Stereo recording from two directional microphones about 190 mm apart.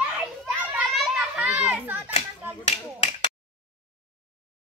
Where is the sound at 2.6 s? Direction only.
35° left (ahead or behind).